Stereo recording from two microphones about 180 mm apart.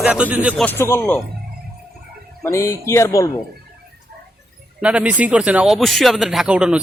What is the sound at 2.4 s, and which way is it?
Speech, 15° left (ahead or behind).